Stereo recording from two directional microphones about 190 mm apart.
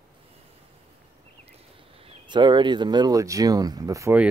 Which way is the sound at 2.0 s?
25° right (ahead or behind).